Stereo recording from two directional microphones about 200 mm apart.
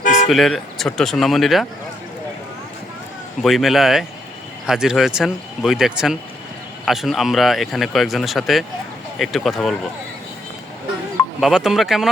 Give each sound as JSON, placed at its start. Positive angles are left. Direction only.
{"t": 0.0, "sound": "vehicle", "side_deg": 40}
{"t": 0.3, "sound": "speech", "side_deg": 0}
{"t": 3.4, "sound": "speech", "side_deg": 0}
{"t": 11.3, "sound": "speech", "side_deg": 0}